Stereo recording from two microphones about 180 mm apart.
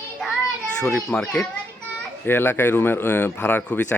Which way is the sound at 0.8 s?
5° left (ahead or behind).